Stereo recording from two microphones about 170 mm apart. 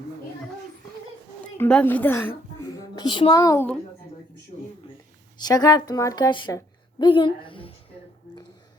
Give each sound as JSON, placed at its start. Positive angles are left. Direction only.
{"t": 1.5, "sound": "a woman's voice", "side_deg": 5}
{"t": 2.9, "sound": "a woman's voice", "side_deg": 25}
{"t": 5.4, "sound": "a woman's voice", "side_deg": 25}